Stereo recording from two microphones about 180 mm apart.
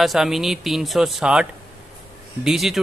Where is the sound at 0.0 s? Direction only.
Centre (ahead or behind).